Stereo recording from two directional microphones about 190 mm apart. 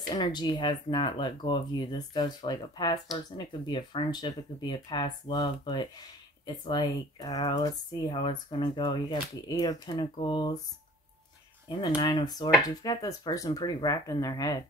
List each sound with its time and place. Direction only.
0.0 s speech: 20° left (ahead or behind)
12.0 s speech: 20° left (ahead or behind)